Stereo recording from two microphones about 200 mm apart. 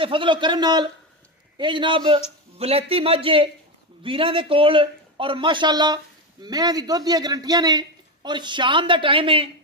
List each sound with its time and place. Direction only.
0.0 s a man's voice: 25° right (ahead or behind)